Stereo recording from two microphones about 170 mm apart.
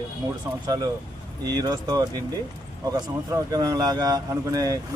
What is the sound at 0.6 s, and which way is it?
Speech, 20° right (ahead or behind).